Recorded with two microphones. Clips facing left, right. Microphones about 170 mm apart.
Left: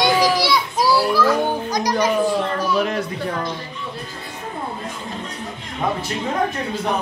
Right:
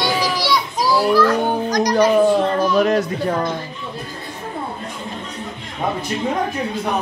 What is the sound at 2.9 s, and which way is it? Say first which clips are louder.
Speech: right 5 dB; 50° right (ahead or behind).